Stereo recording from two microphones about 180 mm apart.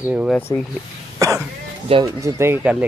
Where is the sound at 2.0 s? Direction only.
15° right (ahead or behind).